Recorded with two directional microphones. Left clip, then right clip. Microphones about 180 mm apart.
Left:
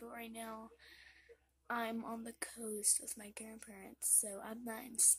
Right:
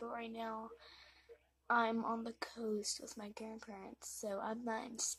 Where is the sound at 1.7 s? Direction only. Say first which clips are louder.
Right 6 dB; 10° left (ahead or behind).